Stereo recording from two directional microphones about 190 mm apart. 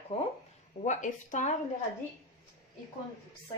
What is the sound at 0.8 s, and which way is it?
Speech, 40° left (ahead or behind).